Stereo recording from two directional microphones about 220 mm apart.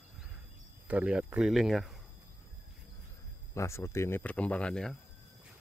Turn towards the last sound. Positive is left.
turn(degrees=5)  # may be behind; listen again after turning